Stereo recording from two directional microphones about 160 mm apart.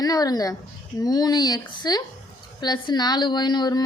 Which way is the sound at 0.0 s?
25° left (ahead or behind).